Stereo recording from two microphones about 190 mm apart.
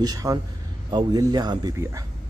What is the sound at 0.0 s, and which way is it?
A man's voice, 20° right (ahead or behind).